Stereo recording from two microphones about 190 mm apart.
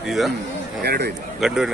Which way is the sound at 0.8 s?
55° right (ahead or behind).